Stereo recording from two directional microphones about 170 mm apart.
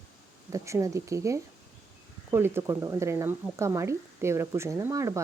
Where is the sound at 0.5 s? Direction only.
20° right (ahead or behind).